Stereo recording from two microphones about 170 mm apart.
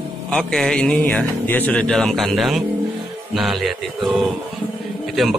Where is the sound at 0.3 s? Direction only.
5° left (ahead or behind).